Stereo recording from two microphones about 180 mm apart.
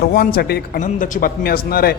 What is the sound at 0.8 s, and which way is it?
Speech, 45° left (ahead or behind).